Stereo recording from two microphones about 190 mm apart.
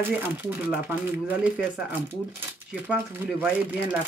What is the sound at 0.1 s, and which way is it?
Speech, 10° right (ahead or behind).